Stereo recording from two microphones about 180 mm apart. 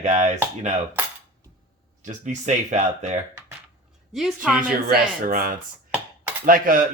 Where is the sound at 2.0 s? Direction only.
45° right (ahead or behind).